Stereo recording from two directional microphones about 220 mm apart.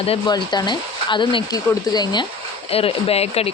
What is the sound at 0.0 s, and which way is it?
Speech, 25° left (ahead or behind).